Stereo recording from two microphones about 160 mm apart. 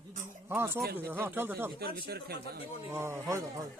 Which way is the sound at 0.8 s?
75° right (ahead or behind).